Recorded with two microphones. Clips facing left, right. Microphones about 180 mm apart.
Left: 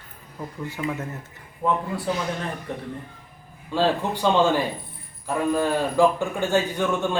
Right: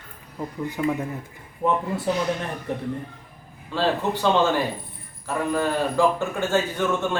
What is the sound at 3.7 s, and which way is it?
Speech, 15° left (ahead or behind).